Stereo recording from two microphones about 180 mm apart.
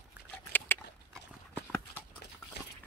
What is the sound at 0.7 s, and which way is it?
Dog, 10° left (ahead or behind).